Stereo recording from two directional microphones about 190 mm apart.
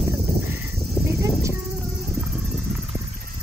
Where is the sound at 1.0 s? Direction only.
15° right (ahead or behind).